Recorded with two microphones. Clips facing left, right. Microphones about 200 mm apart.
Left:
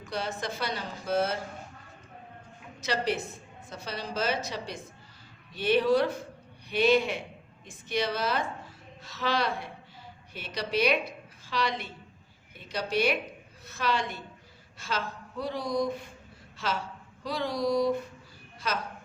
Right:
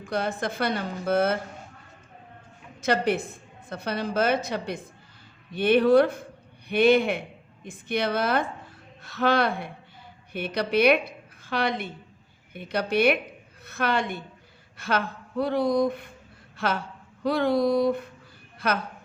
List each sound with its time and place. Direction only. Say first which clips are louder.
0.0 s speech: right 6 dB; 55° right (ahead or behind)
2.8 s a woman's voice: right 6 dB; 55° right (ahead or behind)